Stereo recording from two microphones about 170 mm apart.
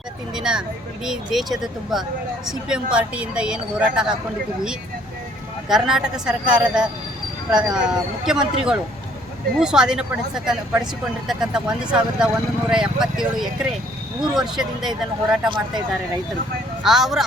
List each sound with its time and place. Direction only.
0.3 s a woman's voice: 5° right (ahead or behind)
5.6 s a woman's voice: 5° right (ahead or behind)
15.4 s speech: 30° right (ahead or behind)
16.8 s a woman's voice: centre (ahead or behind)